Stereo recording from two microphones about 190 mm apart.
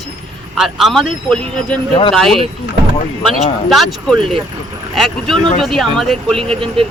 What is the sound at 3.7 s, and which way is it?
Speech, centre (ahead or behind).